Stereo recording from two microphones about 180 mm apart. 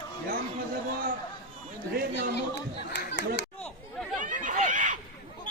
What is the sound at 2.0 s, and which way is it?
Speech, 60° right (ahead or behind).